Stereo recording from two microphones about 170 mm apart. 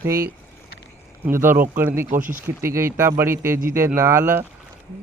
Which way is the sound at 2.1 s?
50° right (ahead or behind).